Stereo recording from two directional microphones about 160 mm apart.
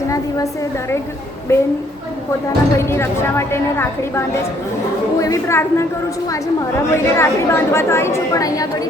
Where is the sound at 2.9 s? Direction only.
15° left (ahead or behind).